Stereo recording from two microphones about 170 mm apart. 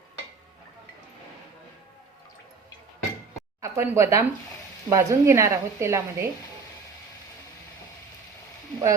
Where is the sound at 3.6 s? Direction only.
15° right (ahead or behind).